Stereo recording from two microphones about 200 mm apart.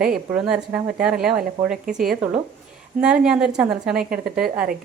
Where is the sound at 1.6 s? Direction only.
25° right (ahead or behind).